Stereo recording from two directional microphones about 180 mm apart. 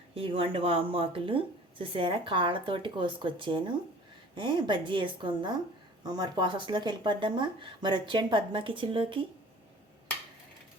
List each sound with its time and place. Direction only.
0.1 s speech: 30° right (ahead or behind)